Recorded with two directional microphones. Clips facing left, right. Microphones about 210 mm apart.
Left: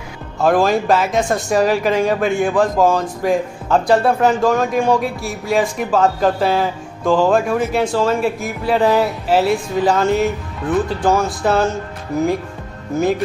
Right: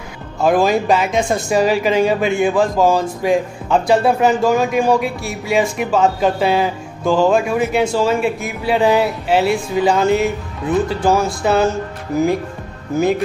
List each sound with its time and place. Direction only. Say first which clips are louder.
0.4 s speech: even; centre (ahead or behind)